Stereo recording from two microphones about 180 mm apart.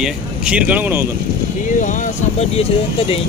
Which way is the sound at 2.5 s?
35° left (ahead or behind).